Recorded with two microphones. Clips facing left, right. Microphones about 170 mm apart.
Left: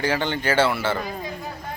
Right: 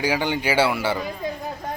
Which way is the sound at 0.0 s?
10° right (ahead or behind).